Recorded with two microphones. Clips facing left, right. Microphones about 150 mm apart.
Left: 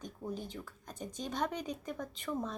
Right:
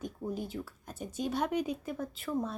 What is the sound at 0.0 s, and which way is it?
Speech, 10° right (ahead or behind).